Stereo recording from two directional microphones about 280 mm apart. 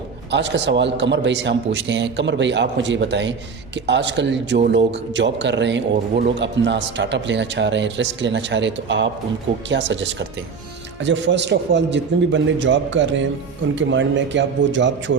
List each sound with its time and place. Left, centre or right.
0.3 s speech: right